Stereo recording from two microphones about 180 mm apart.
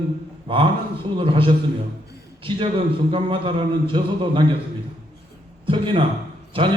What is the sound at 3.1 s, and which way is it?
A man's voice, 30° right (ahead or behind).